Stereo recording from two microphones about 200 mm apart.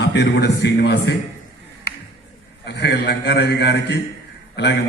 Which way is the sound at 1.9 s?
50° left (ahead or behind).